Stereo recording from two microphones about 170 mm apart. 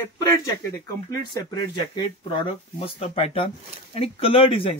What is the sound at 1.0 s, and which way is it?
Speech, 20° left (ahead or behind).